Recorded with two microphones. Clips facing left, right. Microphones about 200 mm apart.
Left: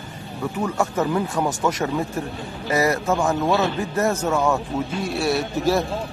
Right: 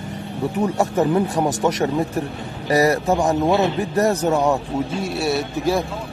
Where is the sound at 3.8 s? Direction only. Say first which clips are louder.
Right 3 dB; 35° right (ahead or behind).